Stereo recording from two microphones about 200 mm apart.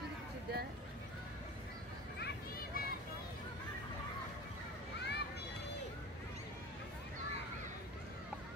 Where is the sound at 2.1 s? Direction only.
55° left (ahead or behind).